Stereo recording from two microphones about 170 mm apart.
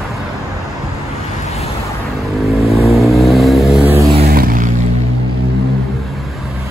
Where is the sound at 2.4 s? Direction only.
Centre (ahead or behind).